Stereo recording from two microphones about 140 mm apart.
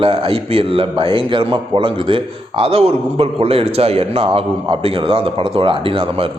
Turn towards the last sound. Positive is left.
turn(degrees=-40)  # may be behind; listen again after turning